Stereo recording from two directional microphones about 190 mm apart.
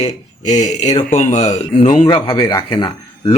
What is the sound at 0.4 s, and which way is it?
Speech, 40° left (ahead or behind).